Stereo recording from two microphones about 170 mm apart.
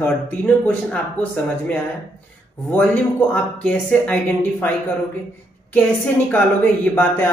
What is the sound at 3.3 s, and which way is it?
Speech, 5° left (ahead or behind).